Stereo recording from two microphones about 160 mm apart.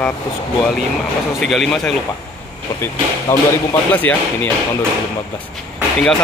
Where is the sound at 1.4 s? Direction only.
Centre (ahead or behind).